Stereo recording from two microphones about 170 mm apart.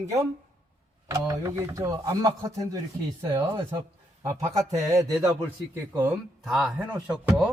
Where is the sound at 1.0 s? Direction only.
20° right (ahead or behind).